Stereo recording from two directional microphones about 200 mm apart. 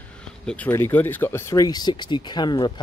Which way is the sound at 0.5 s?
10° left (ahead or behind).